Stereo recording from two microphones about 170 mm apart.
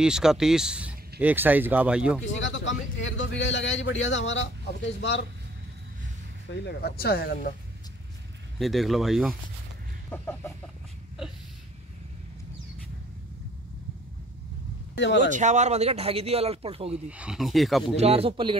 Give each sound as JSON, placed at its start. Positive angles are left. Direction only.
{"t": 0.0, "sound": "speech", "side_deg": -5}
{"t": 2.2, "sound": "speech", "side_deg": 90}
{"t": 6.6, "sound": "speech", "side_deg": 70}
{"t": 8.5, "sound": "speech", "side_deg": 0}
{"t": 10.0, "sound": "chicken", "side_deg": 15}
{"t": 15.1, "sound": "speech", "side_deg": -45}
{"t": 17.1, "sound": "speech", "side_deg": -5}
{"t": 17.9, "sound": "speech", "side_deg": -35}